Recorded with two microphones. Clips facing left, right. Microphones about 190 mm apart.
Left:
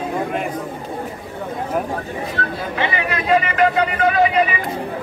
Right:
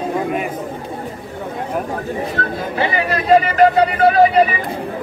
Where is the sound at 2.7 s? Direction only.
35° right (ahead or behind).